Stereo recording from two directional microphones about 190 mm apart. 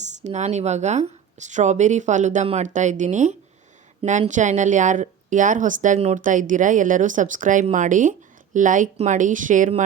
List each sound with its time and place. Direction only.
0.0 s speech: 40° right (ahead or behind)